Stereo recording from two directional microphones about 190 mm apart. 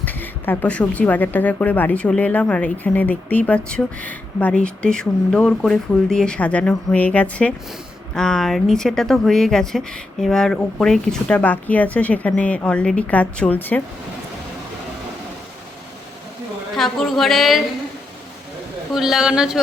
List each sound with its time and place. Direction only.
0.0 s a woman's voice: 10° left (ahead or behind)
16.7 s speech: centre (ahead or behind)
18.9 s speech: centre (ahead or behind)